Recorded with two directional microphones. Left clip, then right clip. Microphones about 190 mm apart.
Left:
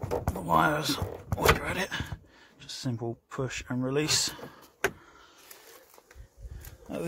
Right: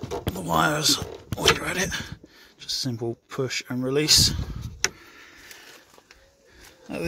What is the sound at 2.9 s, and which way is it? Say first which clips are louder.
Speech: right 6 dB; 15° right (ahead or behind).